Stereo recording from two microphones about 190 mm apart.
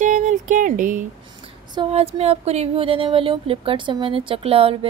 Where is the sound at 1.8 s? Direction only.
30° right (ahead or behind).